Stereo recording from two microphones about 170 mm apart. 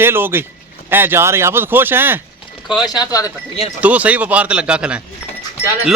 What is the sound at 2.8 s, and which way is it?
Speech, 20° left (ahead or behind).